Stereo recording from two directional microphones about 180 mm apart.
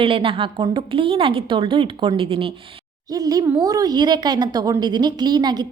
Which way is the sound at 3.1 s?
20° right (ahead or behind).